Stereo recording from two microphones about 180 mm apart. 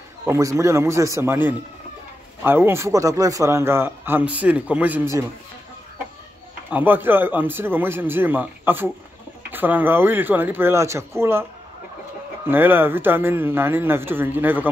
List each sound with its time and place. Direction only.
0.2 s a man's voice: 15° right (ahead or behind)
6.7 s a man's voice: 10° right (ahead or behind)
12.4 s a man's voice: 10° right (ahead or behind)